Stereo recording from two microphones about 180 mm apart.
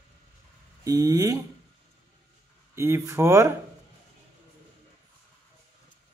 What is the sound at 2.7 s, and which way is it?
Speech, 15° right (ahead or behind).